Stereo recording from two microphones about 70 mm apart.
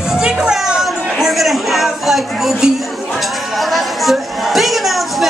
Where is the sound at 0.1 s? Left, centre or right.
Centre.